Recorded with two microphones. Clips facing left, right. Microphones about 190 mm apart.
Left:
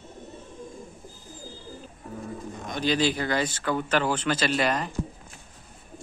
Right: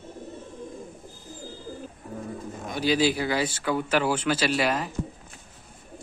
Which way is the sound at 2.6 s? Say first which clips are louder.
Right 2 dB; 10° right (ahead or behind).